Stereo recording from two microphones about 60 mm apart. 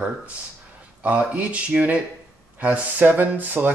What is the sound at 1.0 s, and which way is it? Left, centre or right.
Speech, right.